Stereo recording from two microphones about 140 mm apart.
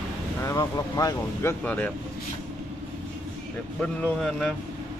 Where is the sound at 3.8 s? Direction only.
5° left (ahead or behind).